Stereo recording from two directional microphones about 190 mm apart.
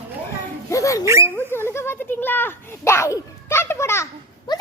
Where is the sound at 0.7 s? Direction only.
15° left (ahead or behind).